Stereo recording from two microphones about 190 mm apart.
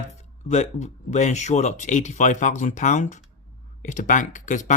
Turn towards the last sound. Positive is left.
turn(degrees=40)  # may be behind; listen again after turning